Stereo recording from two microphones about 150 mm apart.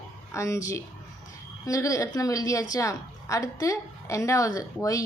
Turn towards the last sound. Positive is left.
turn(degrees=20)  # may be behind; listen again after turning